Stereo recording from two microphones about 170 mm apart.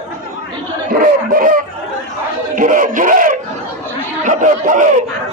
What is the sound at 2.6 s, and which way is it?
Speech, 50° right (ahead or behind).